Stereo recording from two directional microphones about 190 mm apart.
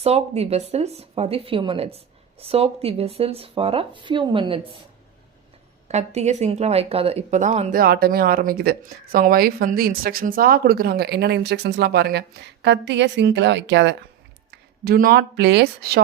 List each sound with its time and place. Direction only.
0.0 s speech: 35° right (ahead or behind)
5.9 s speech: 35° right (ahead or behind)
7.7 s a woman's voice: 50° right (ahead or behind); by 13.9 s 65° right (ahead or behind)
14.5 s speech: 50° right (ahead or behind)